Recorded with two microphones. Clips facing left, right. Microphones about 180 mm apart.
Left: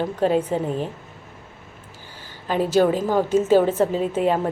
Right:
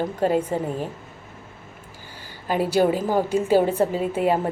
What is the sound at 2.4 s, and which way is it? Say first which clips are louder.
A woman's voice: left 1 dB; 10° right (ahead or behind).